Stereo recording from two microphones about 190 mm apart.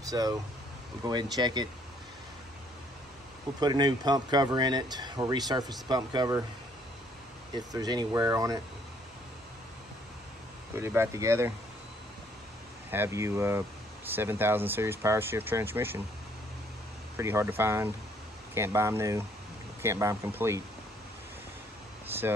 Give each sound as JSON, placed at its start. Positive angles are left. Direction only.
{"t": 0.0, "sound": "speech", "side_deg": -20}
{"t": 3.5, "sound": "speech", "side_deg": -20}
{"t": 7.5, "sound": "speech", "side_deg": -20}
{"t": 10.8, "sound": "speech", "side_deg": -10}
{"t": 12.9, "sound": "speech", "side_deg": -15}
{"t": 17.2, "sound": "speech", "side_deg": -15}
{"t": 22.1, "sound": "speech", "side_deg": -10}